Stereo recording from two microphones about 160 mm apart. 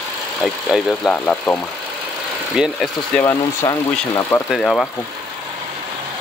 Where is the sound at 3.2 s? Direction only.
20° left (ahead or behind).